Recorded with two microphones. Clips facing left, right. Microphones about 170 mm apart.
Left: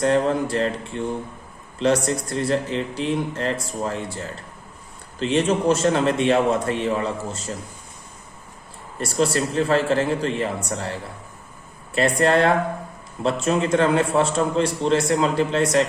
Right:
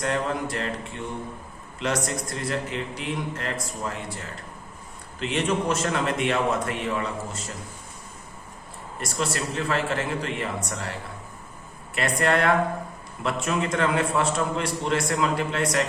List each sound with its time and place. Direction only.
0.0 s speech: 30° left (ahead or behind)
1.8 s speech: 30° left (ahead or behind)
9.0 s speech: 30° left (ahead or behind)
11.9 s a man's voice: 30° left (ahead or behind)